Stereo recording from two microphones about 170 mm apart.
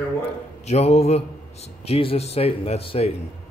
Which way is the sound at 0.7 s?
40° left (ahead or behind).